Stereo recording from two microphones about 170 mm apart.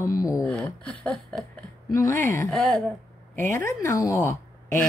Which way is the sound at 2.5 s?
Centre (ahead or behind).